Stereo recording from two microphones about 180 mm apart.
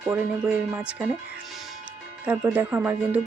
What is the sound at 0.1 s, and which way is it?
Speech, 10° right (ahead or behind).